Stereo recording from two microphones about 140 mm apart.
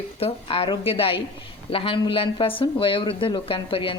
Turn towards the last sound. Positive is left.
turn(degrees=40)  # may be behind; listen again after turning